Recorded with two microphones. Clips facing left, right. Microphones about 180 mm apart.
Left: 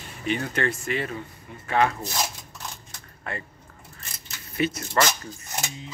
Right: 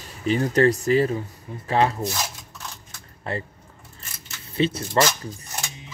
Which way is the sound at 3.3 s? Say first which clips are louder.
Right 5 dB; 35° right (ahead or behind).